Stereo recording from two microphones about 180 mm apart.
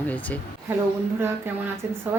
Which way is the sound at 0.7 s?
10° right (ahead or behind).